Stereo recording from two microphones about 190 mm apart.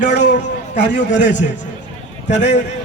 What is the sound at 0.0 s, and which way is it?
A man's voice, 65° left (ahead or behind).